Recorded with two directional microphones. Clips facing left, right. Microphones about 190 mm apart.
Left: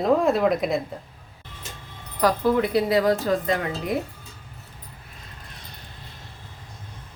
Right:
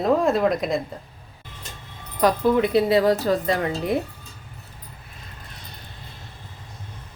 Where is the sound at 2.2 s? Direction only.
20° right (ahead or behind).